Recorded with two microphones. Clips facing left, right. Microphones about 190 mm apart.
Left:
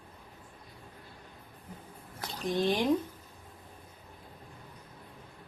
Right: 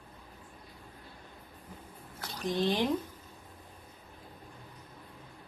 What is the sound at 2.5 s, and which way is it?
Speech, 15° left (ahead or behind).